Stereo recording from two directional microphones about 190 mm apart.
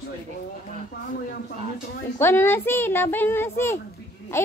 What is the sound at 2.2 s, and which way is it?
A woman's voice, 10° left (ahead or behind).